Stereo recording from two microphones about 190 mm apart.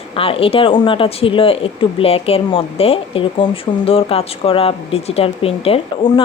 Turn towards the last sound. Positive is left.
turn(degrees=30)  # may be behind; listen again after turning